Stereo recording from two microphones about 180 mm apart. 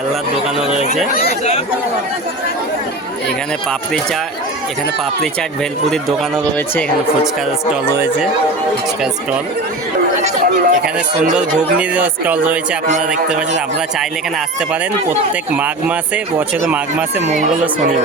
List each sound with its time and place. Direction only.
10.2 s chatter: 45° right (ahead or behind)
11.3 s speech: 5° right (ahead or behind)
15.5 s speech: 10° right (ahead or behind)
17.2 s speech: 40° right (ahead or behind)